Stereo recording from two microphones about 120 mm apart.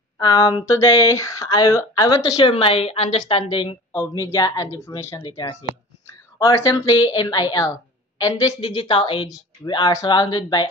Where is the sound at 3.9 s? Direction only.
25° left (ahead or behind).